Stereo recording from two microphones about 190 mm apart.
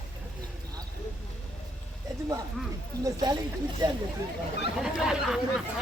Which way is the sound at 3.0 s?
20° right (ahead or behind).